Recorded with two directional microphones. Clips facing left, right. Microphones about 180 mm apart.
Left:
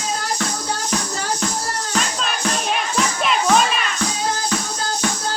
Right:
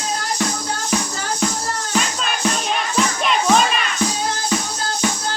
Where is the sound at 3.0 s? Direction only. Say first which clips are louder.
Right 2 dB; centre (ahead or behind).